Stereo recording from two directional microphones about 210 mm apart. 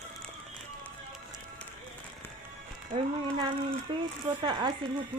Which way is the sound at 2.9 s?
20° right (ahead or behind).